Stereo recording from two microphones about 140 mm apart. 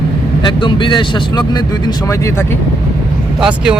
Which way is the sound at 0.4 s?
35° left (ahead or behind).